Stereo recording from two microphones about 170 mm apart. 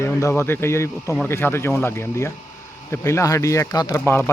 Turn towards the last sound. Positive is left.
turn(degrees=15)  # may be behind; listen again after turning